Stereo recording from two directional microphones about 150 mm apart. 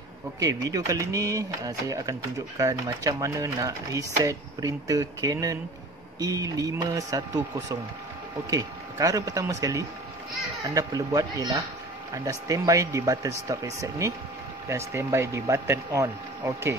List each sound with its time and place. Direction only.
0.4 s speech: 25° right (ahead or behind)
8.5 s speech: 25° right (ahead or behind)